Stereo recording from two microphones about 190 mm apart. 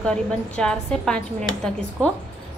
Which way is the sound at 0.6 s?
5° left (ahead or behind).